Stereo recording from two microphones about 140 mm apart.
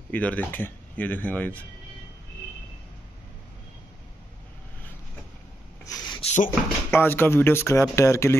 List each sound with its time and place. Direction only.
0.1 s speech: 10° left (ahead or behind)
5.9 s a sound: 30° left (ahead or behind)
6.2 s cupboard open or close: 60° left (ahead or behind)
6.9 s speech: 15° left (ahead or behind)